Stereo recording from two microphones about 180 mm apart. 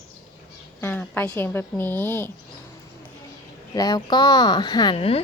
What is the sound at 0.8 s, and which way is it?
A woman's voice, 10° left (ahead or behind).